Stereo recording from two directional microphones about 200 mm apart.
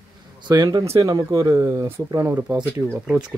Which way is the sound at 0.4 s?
20° right (ahead or behind).